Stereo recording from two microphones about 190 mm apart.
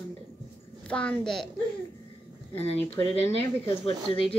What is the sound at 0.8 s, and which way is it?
Speech, 5° left (ahead or behind).